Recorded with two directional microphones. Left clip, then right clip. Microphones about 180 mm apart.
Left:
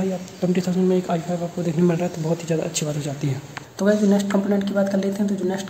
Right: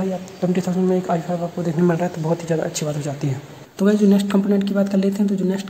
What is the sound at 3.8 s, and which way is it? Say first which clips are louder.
Speech: right 1 dB; 40° right (ahead or behind).